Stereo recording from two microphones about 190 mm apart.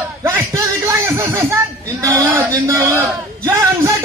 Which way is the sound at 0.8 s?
15° right (ahead or behind).